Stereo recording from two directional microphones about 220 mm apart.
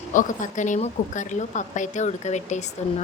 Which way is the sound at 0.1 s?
35° left (ahead or behind).